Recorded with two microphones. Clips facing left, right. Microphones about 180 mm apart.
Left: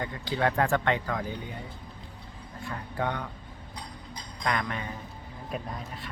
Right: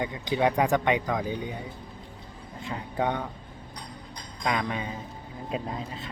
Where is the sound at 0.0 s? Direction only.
15° right (ahead or behind).